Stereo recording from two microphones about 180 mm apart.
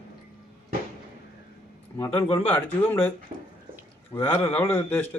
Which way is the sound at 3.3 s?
35° right (ahead or behind).